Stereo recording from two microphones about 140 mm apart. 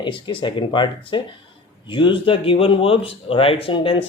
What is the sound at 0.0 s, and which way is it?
Speech, 35° left (ahead or behind).